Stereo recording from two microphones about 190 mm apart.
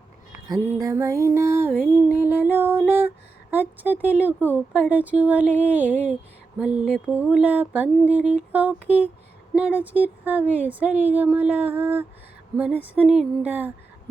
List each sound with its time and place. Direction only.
0.4 s speech: 20° right (ahead or behind)